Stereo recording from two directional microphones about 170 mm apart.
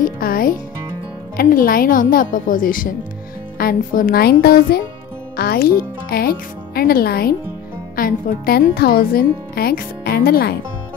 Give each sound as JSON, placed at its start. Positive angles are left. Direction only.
{"t": 0.0, "sound": "a child's voice", "side_deg": 60}